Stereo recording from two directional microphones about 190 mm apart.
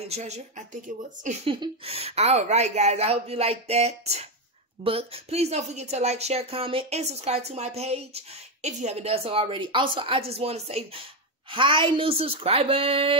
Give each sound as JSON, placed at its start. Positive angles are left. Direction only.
{"t": 0.1, "sound": "a woman's voice", "side_deg": -35}
{"t": 1.5, "sound": "a woman's voice", "side_deg": -30}